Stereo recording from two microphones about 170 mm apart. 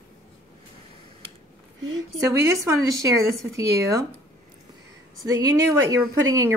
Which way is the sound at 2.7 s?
20° right (ahead or behind).